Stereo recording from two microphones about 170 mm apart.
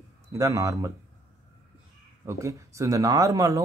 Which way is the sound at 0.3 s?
20° right (ahead or behind).